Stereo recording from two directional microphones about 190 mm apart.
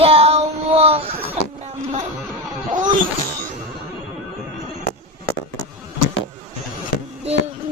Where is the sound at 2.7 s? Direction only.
40° right (ahead or behind).